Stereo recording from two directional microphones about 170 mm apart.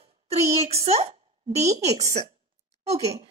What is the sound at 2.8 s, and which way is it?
Speech, 40° right (ahead or behind).